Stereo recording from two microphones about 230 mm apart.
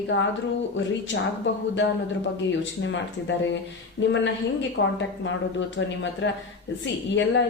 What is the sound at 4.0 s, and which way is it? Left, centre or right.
Speech, left.